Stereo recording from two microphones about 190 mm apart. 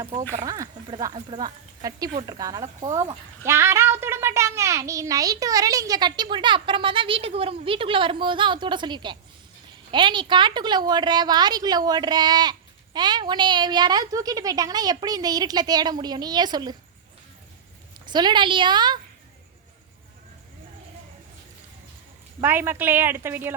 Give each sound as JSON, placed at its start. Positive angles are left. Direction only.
{"t": 0.3, "sound": "speech", "side_deg": -20}
{"t": 18.0, "sound": "speech", "side_deg": -25}
{"t": 22.4, "sound": "speech", "side_deg": -10}